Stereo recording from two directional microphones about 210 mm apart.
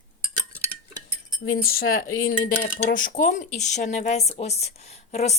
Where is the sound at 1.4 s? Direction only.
45° left (ahead or behind).